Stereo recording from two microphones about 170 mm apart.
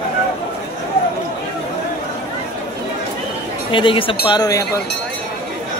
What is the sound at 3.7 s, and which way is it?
Speech, 30° left (ahead or behind).